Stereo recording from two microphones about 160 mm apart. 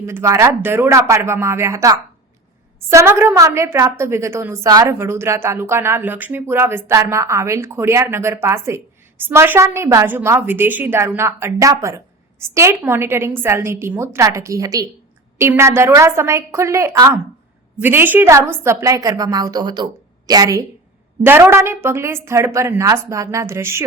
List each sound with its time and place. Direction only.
0.0 s a woman's voice: 15° right (ahead or behind)